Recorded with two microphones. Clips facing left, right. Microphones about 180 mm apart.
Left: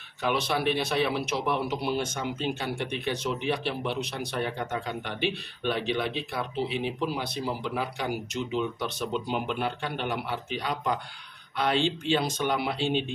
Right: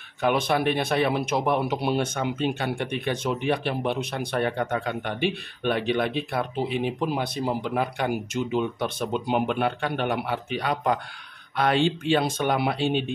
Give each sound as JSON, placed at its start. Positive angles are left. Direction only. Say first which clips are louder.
{"t": 0.2, "sound": "speech", "louder": "right 4 dB", "side_deg": -50}